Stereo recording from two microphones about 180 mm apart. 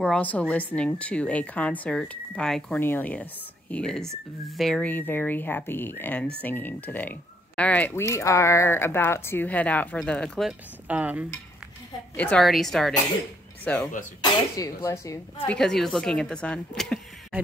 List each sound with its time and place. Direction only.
0.0 s speech: 5° left (ahead or behind)
10.9 s speech: 10° right (ahead or behind)
12.2 s speech: 5° left (ahead or behind)
14.2 s speech: 20° left (ahead or behind)
15.4 s speech: 5° left (ahead or behind)